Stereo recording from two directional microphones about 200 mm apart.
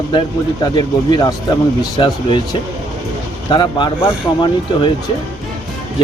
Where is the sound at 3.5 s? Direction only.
25° left (ahead or behind).